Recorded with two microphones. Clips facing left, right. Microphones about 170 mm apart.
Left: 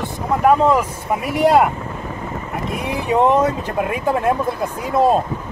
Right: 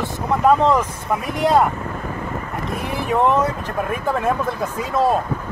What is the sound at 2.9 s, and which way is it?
Speech, 20° left (ahead or behind).